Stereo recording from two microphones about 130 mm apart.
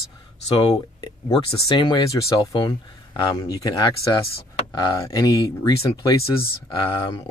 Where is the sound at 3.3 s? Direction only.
30° left (ahead or behind).